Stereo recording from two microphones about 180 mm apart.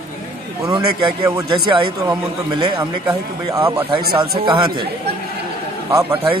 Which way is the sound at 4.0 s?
60° right (ahead or behind).